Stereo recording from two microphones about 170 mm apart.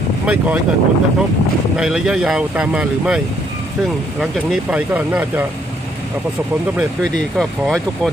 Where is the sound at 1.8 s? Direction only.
5° right (ahead or behind).